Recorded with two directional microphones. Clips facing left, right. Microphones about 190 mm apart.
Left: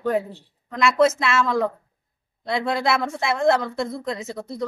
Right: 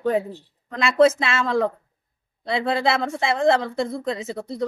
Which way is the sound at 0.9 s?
30° right (ahead or behind).